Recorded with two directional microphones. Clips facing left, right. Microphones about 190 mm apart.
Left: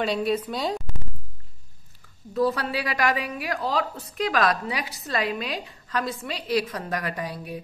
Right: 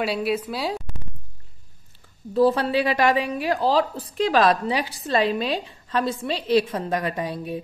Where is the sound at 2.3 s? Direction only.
30° right (ahead or behind).